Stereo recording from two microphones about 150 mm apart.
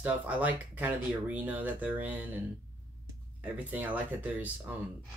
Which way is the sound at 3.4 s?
10° right (ahead or behind).